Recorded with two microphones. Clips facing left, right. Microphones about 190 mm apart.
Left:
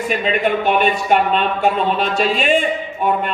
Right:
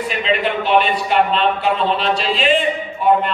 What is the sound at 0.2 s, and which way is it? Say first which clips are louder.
Speech: right 1 dB; 45° left (ahead or behind).